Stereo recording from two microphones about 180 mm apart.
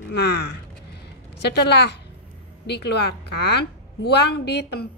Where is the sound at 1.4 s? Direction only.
70° left (ahead or behind).